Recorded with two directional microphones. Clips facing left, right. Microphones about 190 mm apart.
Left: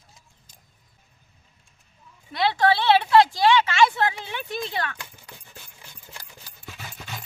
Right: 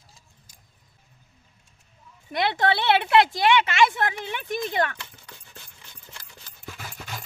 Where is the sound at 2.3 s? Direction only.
20° right (ahead or behind).